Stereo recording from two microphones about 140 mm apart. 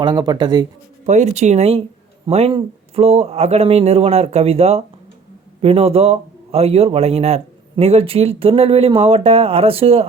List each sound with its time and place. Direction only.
0.0 s speech: 30° right (ahead or behind)
1.0 s speech: 55° right (ahead or behind)